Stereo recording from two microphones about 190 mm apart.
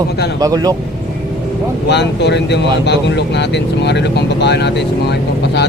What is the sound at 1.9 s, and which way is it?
Speech, 65° left (ahead or behind).